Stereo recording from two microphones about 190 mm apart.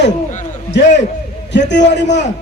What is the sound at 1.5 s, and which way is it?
Speech, 65° left (ahead or behind).